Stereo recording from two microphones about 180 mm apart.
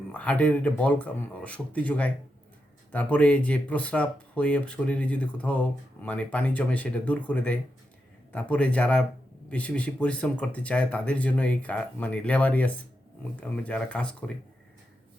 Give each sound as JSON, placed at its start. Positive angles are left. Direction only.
{"t": 0.1, "sound": "speech", "side_deg": 10}